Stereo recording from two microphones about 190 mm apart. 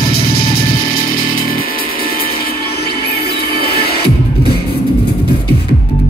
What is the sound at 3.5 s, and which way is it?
Music, 55° left (ahead or behind).